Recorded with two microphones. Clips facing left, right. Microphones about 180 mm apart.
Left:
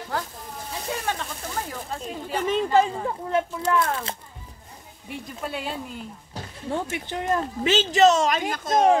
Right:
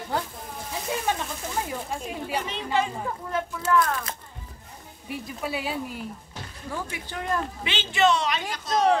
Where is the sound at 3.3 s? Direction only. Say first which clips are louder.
Left 1 dB; 25° left (ahead or behind).